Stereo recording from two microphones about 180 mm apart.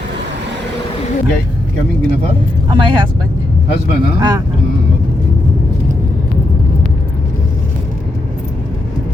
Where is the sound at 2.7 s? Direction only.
25° right (ahead or behind).